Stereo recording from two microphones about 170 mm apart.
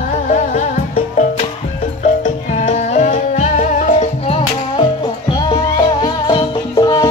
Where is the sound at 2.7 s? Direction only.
40° left (ahead or behind).